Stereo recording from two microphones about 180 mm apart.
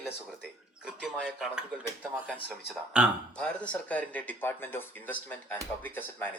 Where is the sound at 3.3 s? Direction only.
5° left (ahead or behind).